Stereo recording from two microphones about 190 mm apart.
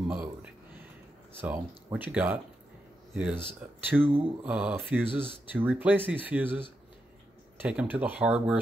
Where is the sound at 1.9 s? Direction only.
10° right (ahead or behind).